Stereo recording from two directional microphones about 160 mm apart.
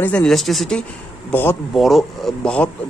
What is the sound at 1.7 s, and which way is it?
Speech, centre (ahead or behind).